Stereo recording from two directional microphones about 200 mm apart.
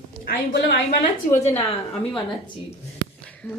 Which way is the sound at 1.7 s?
25° left (ahead or behind).